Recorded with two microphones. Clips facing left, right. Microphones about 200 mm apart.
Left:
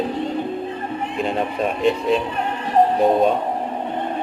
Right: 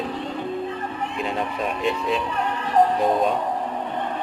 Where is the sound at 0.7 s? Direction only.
35° left (ahead or behind).